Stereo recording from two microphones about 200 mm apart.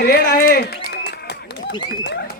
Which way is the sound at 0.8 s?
55° left (ahead or behind).